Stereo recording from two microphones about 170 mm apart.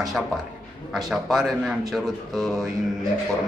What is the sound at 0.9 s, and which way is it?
Speech, centre (ahead or behind).